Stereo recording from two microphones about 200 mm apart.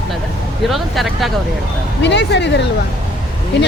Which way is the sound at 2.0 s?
60° left (ahead or behind).